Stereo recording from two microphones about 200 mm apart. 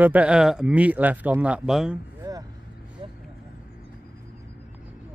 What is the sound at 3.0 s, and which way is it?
Speech, 25° right (ahead or behind).